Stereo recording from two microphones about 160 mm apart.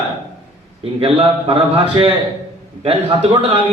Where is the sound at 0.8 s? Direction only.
35° right (ahead or behind).